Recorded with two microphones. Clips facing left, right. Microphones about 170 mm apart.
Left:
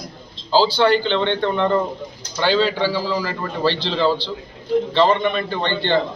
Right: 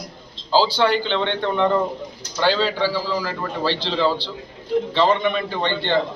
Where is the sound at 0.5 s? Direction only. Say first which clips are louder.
Left 2 dB; 10° right (ahead or behind).